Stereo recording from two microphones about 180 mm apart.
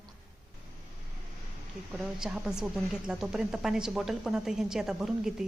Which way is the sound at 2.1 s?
5° right (ahead or behind).